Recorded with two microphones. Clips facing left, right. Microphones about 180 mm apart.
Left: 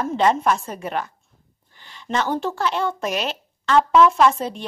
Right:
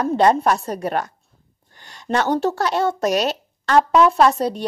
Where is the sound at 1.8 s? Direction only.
45° right (ahead or behind).